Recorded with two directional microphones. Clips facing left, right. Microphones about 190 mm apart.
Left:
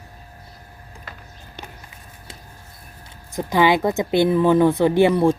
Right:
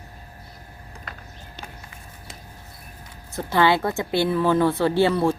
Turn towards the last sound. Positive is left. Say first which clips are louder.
# left 4 dB
turn(degrees=15)  # may be behind; listen again after turning